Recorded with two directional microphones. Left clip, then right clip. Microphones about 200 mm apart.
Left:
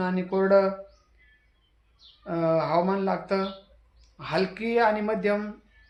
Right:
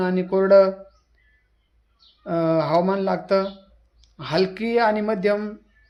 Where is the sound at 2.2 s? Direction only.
45° right (ahead or behind).